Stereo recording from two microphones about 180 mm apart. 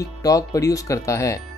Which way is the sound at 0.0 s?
20° left (ahead or behind).